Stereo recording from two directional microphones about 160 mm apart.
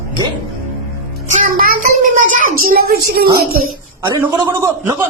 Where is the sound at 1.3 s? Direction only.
60° right (ahead or behind).